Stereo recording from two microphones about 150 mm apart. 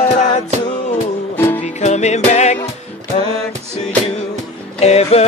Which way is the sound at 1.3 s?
15° left (ahead or behind).